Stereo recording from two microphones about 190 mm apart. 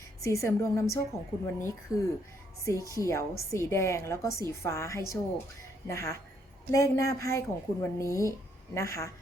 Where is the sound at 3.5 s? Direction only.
15° left (ahead or behind).